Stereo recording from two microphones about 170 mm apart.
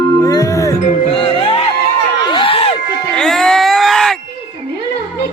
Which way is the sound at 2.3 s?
30° left (ahead or behind).